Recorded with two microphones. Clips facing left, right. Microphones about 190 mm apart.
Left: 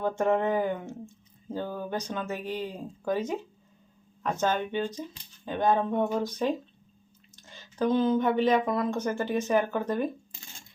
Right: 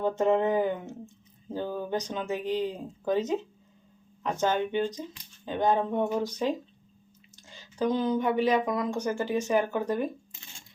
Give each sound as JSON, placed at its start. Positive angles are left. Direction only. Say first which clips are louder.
{"t": 0.0, "sound": "speech", "louder": "right 1 dB", "side_deg": -15}